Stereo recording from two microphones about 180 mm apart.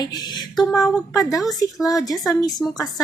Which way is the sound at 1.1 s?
20° left (ahead or behind).